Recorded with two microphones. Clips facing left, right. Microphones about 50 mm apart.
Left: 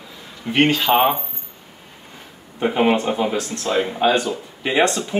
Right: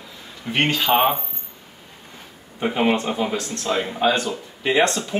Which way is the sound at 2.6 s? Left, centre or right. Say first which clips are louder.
Left 3 dB; centre.